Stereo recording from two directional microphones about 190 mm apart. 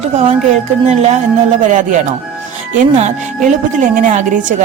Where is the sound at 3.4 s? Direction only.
40° right (ahead or behind).